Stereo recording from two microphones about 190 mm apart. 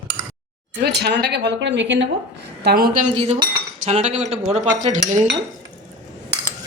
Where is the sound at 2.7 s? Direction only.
50° right (ahead or behind).